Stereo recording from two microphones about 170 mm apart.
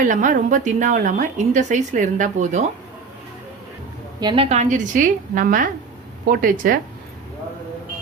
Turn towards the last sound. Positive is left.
turn(degrees=-55)  # may be behind; listen again after turning